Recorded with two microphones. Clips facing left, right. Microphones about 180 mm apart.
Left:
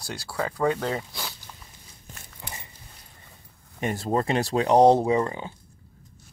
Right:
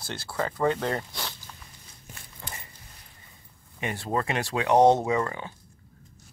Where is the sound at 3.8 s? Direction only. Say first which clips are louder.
Left 4 dB; 40° left (ahead or behind); by 5.5 s 20° left (ahead or behind).